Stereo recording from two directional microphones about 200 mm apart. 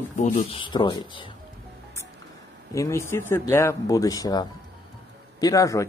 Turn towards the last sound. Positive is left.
turn(degrees=15)  # may be behind; listen again after turning